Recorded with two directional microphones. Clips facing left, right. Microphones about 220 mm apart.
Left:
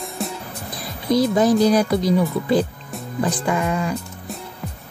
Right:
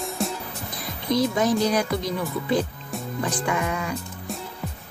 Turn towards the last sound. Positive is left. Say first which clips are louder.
# left 4 dB
turn(degrees=30)  # may be behind; listen again after turning